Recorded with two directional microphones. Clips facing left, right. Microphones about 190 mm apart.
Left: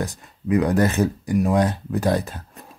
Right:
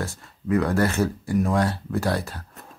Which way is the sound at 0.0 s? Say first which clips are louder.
Left 3 dB; 15° left (ahead or behind).